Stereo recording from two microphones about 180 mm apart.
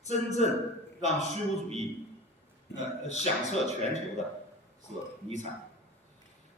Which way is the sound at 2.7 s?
40° left (ahead or behind).